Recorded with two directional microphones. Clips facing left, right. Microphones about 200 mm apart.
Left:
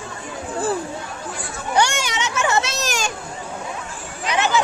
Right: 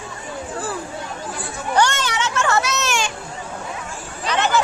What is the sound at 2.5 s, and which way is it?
Children playing, 30° left (ahead or behind).